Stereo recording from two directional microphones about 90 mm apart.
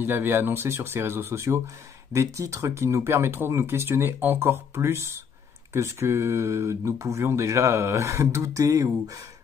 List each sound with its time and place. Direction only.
0.0 s speech: 25° right (ahead or behind)